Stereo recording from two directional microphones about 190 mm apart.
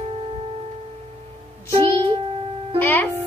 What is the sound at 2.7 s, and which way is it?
Speech, 10° left (ahead or behind).